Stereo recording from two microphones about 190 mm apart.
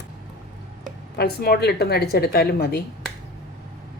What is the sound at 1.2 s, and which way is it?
Speech, 55° left (ahead or behind).